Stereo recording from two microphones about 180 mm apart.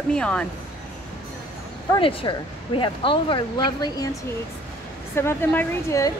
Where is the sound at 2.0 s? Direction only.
30° left (ahead or behind).